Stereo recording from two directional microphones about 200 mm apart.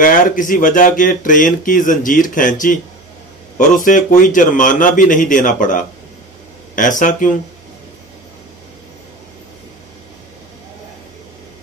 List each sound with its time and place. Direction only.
0.0 s speech: 40° left (ahead or behind)
3.5 s speech: 40° left (ahead or behind)